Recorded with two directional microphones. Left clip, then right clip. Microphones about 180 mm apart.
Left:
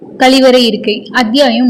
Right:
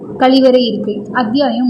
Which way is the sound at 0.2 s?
15° left (ahead or behind).